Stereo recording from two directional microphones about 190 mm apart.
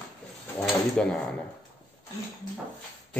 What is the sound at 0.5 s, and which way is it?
Drawer open or close, centre (ahead or behind).